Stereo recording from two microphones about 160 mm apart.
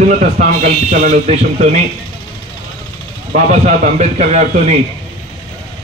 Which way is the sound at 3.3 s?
45° right (ahead or behind).